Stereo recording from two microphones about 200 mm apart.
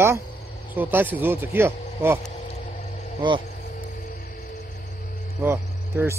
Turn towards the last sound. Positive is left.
turn(degrees=-10)  # may be behind; listen again after turning